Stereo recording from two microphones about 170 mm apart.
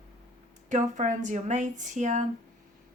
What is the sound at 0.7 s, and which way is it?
Speech, 45° right (ahead or behind).